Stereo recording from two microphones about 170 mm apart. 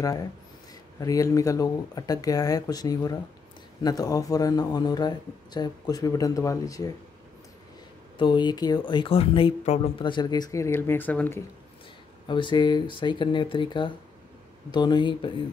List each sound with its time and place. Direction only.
0.0 s speech: 20° left (ahead or behind)
8.2 s speech: 25° left (ahead or behind); by 11.4 s 10° left (ahead or behind)
12.3 s speech: 30° left (ahead or behind)